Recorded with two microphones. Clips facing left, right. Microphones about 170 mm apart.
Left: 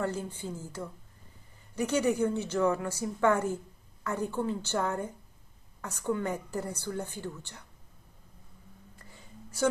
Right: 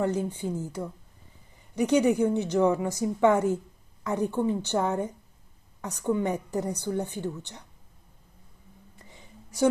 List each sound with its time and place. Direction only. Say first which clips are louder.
0.0 s a woman's voice: right 6 dB; 15° right (ahead or behind)
8.9 s whispering: right 1 dB; 15° right (ahead or behind)